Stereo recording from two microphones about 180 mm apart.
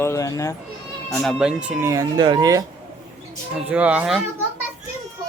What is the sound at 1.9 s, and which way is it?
Speech, 20° right (ahead or behind).